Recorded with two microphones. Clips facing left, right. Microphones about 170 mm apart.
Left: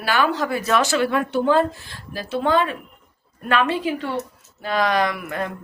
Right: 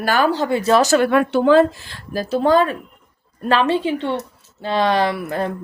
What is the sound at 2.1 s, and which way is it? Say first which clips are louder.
A woman's voice: right 5 dB; 40° right (ahead or behind).